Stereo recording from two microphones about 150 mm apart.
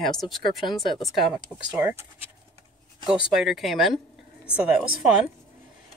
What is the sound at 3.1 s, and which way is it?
Speech, 5° right (ahead or behind).